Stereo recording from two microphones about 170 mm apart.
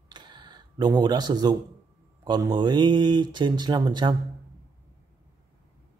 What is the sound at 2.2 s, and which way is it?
Speech, 25° right (ahead or behind).